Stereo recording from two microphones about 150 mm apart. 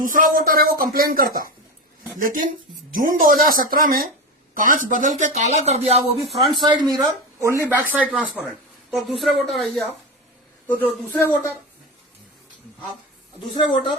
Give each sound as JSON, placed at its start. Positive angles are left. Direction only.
{"t": 0.0, "sound": "speech", "side_deg": -65}
{"t": 0.3, "sound": "speech", "side_deg": -75}
{"t": 2.1, "sound": "speech", "side_deg": -65}
{"t": 6.4, "sound": "speech", "side_deg": -30}
{"t": 10.7, "sound": "a man's voice", "side_deg": 10}